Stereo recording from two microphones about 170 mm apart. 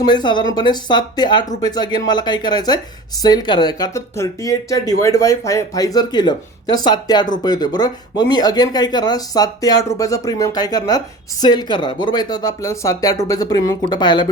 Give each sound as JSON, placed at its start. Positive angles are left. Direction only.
{"t": 0.0, "sound": "speech", "side_deg": 25}